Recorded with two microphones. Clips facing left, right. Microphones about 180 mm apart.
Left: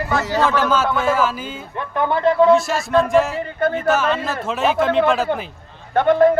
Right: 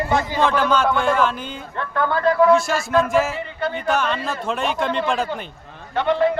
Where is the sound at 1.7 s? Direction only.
20° left (ahead or behind).